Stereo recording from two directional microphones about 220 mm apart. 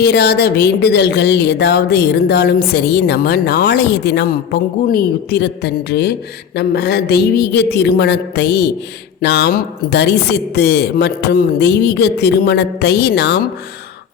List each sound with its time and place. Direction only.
0.0 s speech: 50° left (ahead or behind)